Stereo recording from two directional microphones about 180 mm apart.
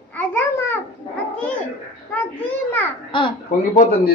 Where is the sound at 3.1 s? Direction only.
25° left (ahead or behind).